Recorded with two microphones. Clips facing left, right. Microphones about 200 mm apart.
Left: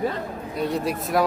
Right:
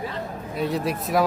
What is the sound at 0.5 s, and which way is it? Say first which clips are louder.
Speech: even; centre (ahead or behind).